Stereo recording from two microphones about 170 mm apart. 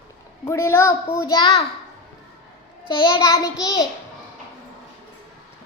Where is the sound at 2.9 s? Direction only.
30° left (ahead or behind).